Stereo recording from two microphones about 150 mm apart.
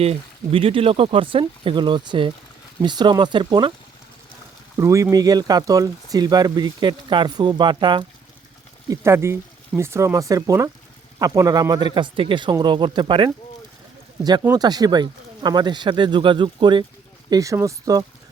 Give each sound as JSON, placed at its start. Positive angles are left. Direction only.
{"t": 0.0, "sound": "speech", "side_deg": -40}
{"t": 4.8, "sound": "speech", "side_deg": -20}
{"t": 8.9, "sound": "speech", "side_deg": -20}
{"t": 14.4, "sound": "speech", "side_deg": -25}